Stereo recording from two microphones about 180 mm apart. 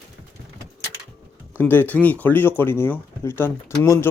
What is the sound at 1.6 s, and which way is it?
Speech, 10° left (ahead or behind).